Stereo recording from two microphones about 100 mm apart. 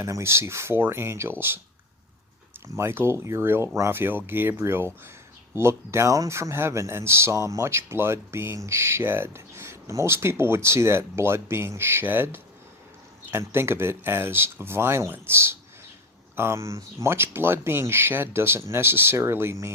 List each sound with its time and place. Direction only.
0.0 s speech: 25° right (ahead or behind)
2.7 s speech: 25° right (ahead or behind)